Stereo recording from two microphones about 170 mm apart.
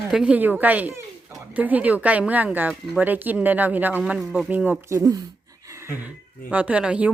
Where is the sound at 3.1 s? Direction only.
10° right (ahead or behind).